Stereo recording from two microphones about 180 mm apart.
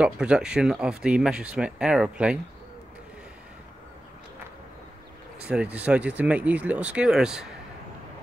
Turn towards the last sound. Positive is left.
turn(degrees=-5)  # may be behind; listen again after turning